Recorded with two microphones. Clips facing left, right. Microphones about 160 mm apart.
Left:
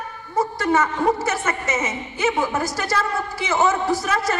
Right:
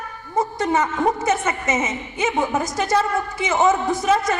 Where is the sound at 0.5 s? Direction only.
20° right (ahead or behind).